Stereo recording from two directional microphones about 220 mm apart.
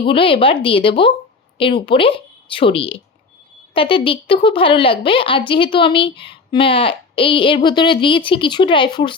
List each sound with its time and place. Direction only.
0.0 s a woman's voice: 25° left (ahead or behind)